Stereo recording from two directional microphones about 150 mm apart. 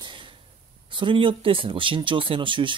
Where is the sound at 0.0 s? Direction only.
35° right (ahead or behind).